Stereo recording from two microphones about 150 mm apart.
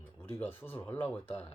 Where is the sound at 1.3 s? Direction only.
40° left (ahead or behind).